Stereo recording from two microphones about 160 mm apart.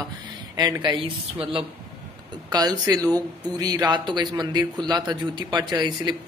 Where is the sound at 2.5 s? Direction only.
25° right (ahead or behind).